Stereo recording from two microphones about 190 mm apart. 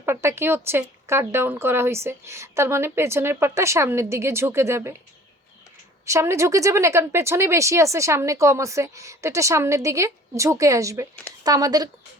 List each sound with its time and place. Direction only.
0.0 s speech: 15° right (ahead or behind)
6.1 s speech: 15° right (ahead or behind)